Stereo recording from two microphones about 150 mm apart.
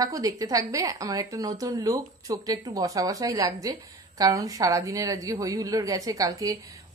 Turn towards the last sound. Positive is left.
turn(degrees=-25)  # may be behind; listen again after turning